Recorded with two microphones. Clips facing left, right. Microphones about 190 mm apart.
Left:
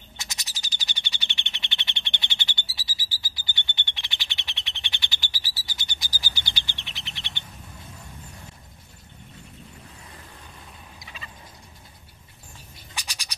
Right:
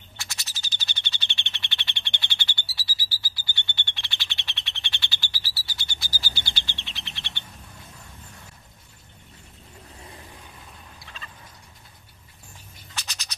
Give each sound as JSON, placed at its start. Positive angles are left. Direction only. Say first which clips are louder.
{"t": 0.2, "sound": "bird", "louder": "even", "side_deg": 20}
{"t": 11.0, "sound": "turkey", "louder": "left 2 dB", "side_deg": 10}
{"t": 12.9, "sound": "a sound", "louder": "even", "side_deg": 10}